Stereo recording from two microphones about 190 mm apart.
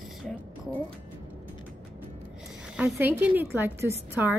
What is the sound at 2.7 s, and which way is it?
A woman's voice, 10° right (ahead or behind).